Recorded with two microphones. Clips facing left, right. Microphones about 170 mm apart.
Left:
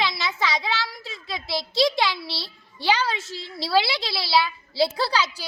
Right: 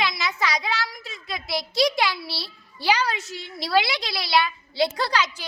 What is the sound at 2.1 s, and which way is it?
Speech, 25° left (ahead or behind).